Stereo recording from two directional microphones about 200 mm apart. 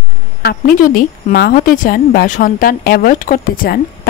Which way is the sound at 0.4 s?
45° left (ahead or behind).